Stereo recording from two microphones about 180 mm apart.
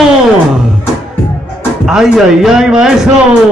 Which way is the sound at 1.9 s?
5° right (ahead or behind).